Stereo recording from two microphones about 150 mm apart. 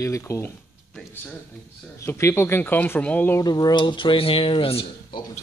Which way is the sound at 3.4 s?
25° left (ahead or behind).